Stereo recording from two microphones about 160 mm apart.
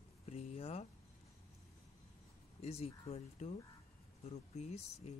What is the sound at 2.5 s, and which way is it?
Speech, 40° left (ahead or behind).